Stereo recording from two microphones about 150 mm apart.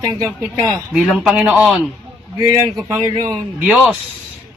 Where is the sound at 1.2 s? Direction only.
5° right (ahead or behind).